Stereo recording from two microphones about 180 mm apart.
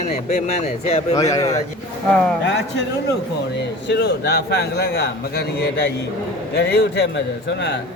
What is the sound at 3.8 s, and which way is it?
A man's voice, 70° left (ahead or behind).